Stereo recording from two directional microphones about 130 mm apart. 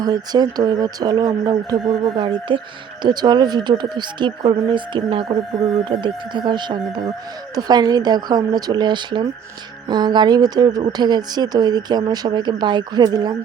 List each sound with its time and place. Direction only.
0.0 s a woman's voice: 30° right (ahead or behind)
1.9 s a woman's voice: 45° right (ahead or behind)